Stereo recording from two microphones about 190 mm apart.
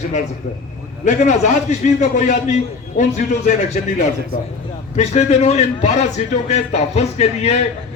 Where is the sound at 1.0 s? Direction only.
40° left (ahead or behind).